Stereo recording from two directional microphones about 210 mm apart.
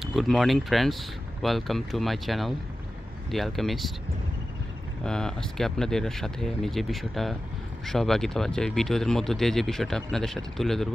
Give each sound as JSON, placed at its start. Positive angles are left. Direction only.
{"t": 0.0, "sound": "speech", "side_deg": 0}
{"t": 5.0, "sound": "speech", "side_deg": 5}